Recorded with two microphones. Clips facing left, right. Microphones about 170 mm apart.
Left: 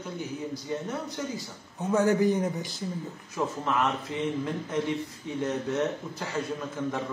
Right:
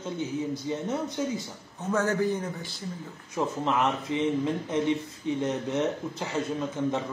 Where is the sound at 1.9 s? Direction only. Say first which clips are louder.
Left 3 dB; 15° left (ahead or behind).